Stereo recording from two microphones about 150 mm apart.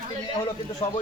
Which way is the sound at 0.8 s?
40° left (ahead or behind).